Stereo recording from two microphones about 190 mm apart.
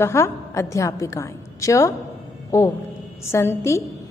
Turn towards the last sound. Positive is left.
turn(degrees=15)  # may be behind; listen again after turning